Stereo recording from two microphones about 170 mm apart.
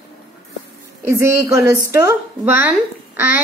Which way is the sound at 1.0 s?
15° right (ahead or behind).